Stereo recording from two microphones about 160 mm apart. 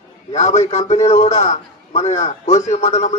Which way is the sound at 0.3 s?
45° left (ahead or behind).